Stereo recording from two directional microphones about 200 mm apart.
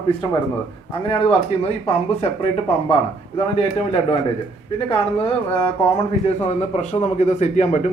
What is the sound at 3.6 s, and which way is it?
Speech, 30° left (ahead or behind).